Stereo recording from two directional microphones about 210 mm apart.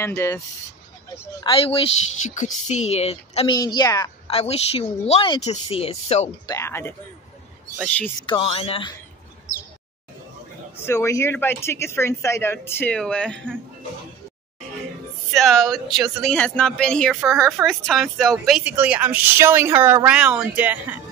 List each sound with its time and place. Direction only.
0.0 s speech: 10° left (ahead or behind)
1.4 s speech: 25° left (ahead or behind)
2.2 s speech: 35° left (ahead or behind); by 4.1 s 20° left (ahead or behind)
4.3 s speech: 30° left (ahead or behind)
6.4 s speech: 15° left (ahead or behind)
8.3 s speech: 25° left (ahead or behind)
10.8 s speech: 10° left (ahead or behind)
15.3 s speech: centre (ahead or behind)